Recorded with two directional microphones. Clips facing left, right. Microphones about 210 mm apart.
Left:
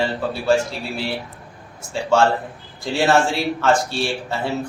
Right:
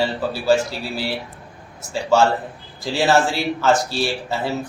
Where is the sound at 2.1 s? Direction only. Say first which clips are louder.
Even; centre (ahead or behind).